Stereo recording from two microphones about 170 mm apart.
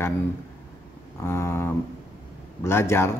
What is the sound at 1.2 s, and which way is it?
A man's voice, 15° left (ahead or behind).